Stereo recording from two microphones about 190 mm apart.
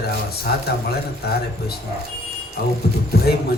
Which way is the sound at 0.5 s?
55° left (ahead or behind).